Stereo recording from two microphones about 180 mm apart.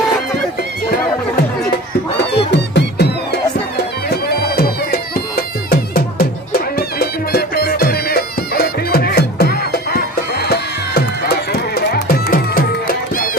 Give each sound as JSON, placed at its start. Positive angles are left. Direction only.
{"t": 2.5, "sound": "music", "side_deg": 70}
{"t": 4.1, "sound": "bagpipes", "side_deg": 60}
{"t": 5.7, "sound": "music", "side_deg": 55}